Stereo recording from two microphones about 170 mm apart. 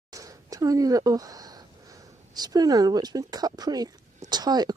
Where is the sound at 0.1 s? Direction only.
20° right (ahead or behind).